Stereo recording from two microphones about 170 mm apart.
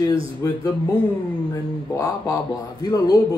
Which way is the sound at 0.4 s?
20° left (ahead or behind).